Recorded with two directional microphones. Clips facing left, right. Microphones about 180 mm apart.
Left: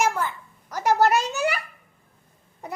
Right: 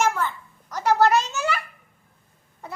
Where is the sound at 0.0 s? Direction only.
10° left (ahead or behind).